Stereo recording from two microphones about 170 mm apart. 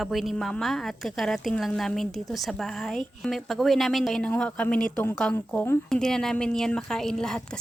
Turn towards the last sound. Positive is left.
turn(degrees=5)  # may be behind; listen again after turning